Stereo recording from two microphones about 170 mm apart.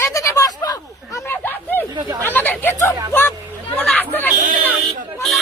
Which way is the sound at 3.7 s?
10° left (ahead or behind).